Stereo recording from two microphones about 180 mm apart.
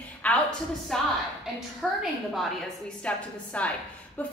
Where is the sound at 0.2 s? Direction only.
5° left (ahead or behind).